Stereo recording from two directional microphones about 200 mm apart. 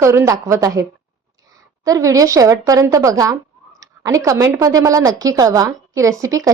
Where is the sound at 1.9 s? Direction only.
15° right (ahead or behind).